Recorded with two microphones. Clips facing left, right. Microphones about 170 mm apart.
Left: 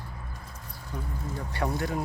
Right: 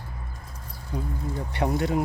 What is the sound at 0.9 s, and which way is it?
Speech, 20° right (ahead or behind).